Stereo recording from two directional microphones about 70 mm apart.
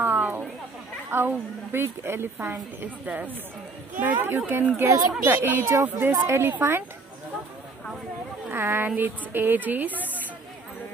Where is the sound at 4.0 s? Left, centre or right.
Right.